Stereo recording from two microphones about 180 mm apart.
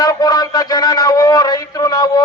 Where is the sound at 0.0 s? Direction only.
20° left (ahead or behind).